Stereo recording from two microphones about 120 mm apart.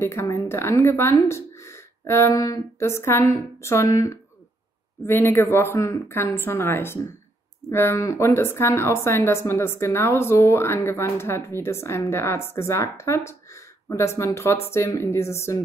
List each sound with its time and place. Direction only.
0.0 s speech: 20° left (ahead or behind)